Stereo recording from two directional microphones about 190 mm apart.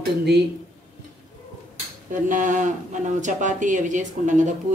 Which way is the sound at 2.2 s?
40° right (ahead or behind).